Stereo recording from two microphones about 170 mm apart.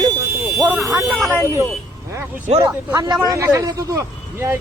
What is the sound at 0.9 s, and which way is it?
Speech, 15° right (ahead or behind).